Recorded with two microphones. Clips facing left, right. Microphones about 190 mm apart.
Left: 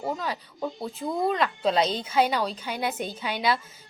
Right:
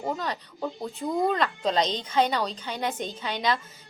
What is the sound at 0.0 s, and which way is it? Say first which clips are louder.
A woman's voice: even; 5° left (ahead or behind).